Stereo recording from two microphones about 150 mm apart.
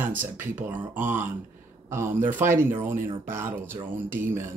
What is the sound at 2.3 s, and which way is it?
Speech, 15° right (ahead or behind).